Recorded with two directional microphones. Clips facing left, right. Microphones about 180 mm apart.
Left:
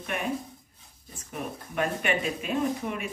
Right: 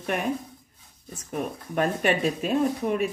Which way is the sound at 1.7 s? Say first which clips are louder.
Right 4 dB; 40° right (ahead or behind).